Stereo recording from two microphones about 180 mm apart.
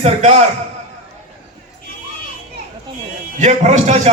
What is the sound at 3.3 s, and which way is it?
Speech, 40° right (ahead or behind).